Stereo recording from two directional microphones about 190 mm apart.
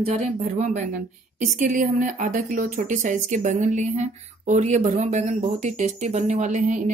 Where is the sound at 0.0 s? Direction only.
35° right (ahead or behind).